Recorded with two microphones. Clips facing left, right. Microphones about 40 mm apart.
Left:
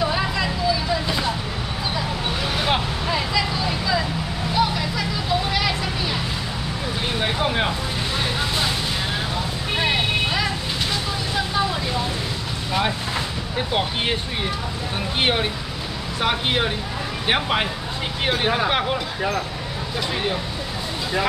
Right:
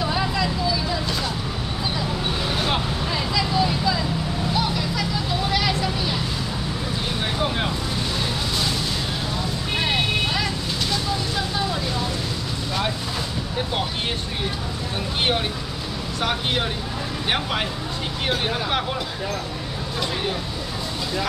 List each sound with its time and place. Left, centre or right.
0.0 s vehicle: centre
2.6 s vehicle: centre
7.2 s vehicle: centre
9.8 s vehicle: centre
16.2 s vehicle: centre
17.3 s a sound: centre